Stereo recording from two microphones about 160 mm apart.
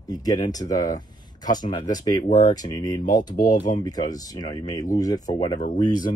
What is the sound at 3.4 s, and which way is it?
Speech, 50° left (ahead or behind).